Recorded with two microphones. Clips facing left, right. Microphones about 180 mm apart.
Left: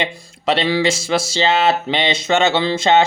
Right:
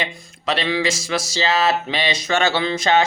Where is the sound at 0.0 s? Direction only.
25° left (ahead or behind).